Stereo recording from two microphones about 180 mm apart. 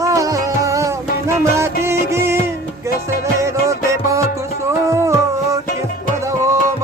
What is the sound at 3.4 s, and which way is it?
Music, 15° right (ahead or behind).